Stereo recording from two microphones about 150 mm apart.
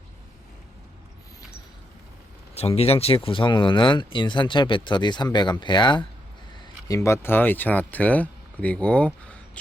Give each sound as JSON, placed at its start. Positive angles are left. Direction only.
{"t": 2.6, "sound": "speech", "side_deg": 40}
{"t": 6.8, "sound": "speech", "side_deg": 20}